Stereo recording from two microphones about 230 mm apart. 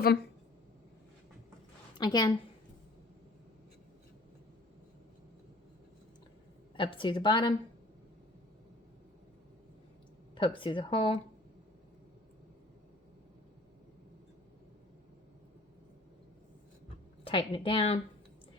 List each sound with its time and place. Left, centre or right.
2.0 s a woman's voice: centre
6.7 s a woman's voice: left
10.3 s a woman's voice: left
17.2 s a woman's voice: left